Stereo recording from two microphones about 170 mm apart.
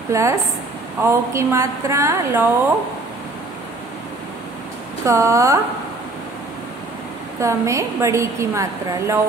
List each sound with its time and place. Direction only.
0.1 s a woman's voice: 20° right (ahead or behind)
5.0 s a woman's voice: 20° right (ahead or behind)
7.3 s a woman's voice: 15° right (ahead or behind)